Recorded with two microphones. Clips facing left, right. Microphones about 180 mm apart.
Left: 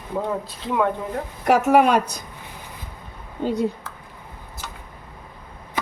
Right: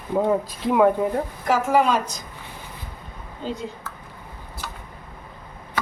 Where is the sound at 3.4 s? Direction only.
65° left (ahead or behind).